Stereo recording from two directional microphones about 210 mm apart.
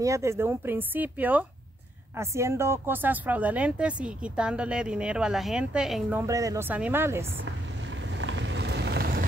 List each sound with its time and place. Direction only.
0.0 s speech: 15° right (ahead or behind)
8.2 s vehicle: 60° right (ahead or behind)